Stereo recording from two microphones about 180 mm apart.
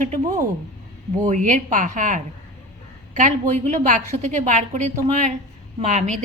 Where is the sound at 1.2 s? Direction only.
45° right (ahead or behind).